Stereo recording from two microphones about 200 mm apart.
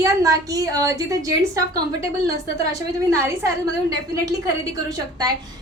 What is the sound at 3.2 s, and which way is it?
A woman's voice, 15° right (ahead or behind).